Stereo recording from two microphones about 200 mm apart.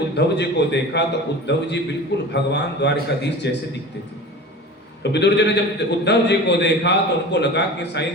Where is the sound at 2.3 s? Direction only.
60° left (ahead or behind).